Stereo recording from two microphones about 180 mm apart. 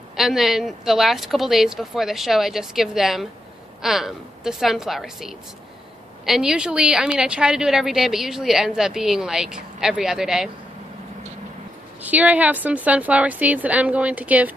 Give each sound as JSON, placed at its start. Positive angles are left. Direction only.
{"t": 0.1, "sound": "a woman's voice", "side_deg": 0}
{"t": 12.0, "sound": "a woman's voice", "side_deg": -10}